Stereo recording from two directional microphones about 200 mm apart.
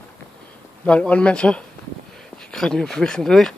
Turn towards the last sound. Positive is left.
turn(degrees=5)  # may be behind; listen again after turning